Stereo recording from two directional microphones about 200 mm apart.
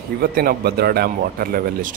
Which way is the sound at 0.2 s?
50° right (ahead or behind).